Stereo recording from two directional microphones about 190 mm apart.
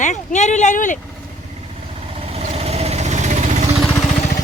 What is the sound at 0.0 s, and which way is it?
Speech, 40° left (ahead or behind).